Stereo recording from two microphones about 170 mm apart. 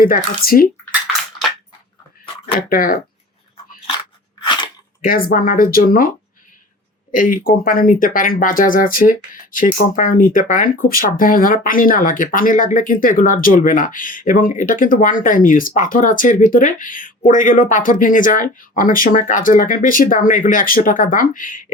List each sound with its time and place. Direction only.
0.0 s speech: 60° left (ahead or behind)
2.6 s speech: 55° left (ahead or behind)
5.0 s speech: 60° left (ahead or behind)
7.1 s speech: 55° left (ahead or behind)